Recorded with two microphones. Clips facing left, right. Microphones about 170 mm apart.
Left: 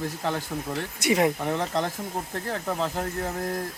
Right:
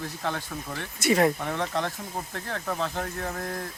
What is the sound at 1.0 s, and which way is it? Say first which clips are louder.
Speech: right 1 dB; 15° left (ahead or behind).